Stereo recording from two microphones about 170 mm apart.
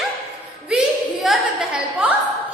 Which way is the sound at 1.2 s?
5° right (ahead or behind).